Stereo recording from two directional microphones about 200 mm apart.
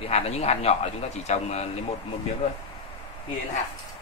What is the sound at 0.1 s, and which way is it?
A man's voice, 30° left (ahead or behind).